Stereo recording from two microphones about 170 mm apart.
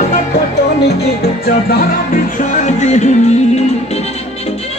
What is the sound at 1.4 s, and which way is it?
Music, 65° left (ahead or behind).